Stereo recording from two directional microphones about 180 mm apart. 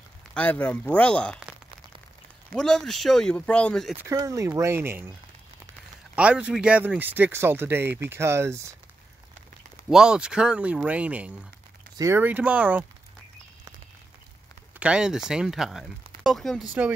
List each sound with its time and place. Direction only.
0.3 s speech: 10° left (ahead or behind)
2.5 s speech: 5° left (ahead or behind)
3.9 s speech: 20° right (ahead or behind)
6.1 s speech: 5° right (ahead or behind)
9.8 s speech: 5° right (ahead or behind)
14.8 s speech: 5° right (ahead or behind)